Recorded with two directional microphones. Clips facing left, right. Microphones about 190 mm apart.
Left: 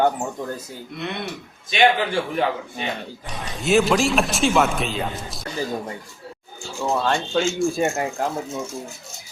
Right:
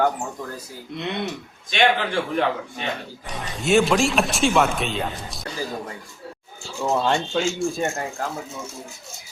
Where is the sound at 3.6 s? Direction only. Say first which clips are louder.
Even; centre (ahead or behind).